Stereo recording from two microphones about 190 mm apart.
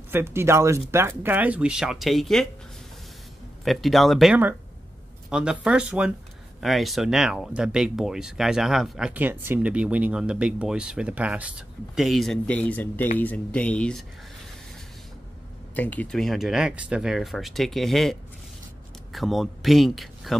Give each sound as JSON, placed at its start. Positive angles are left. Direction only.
{"t": 0.1, "sound": "speech", "side_deg": -15}
{"t": 3.6, "sound": "speech", "side_deg": 0}
{"t": 15.7, "sound": "speech", "side_deg": 10}
{"t": 19.1, "sound": "speech", "side_deg": 0}